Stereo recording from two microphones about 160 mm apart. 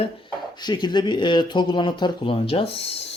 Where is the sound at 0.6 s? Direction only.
25° left (ahead or behind).